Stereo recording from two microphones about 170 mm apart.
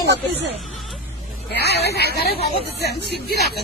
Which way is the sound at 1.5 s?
75° left (ahead or behind).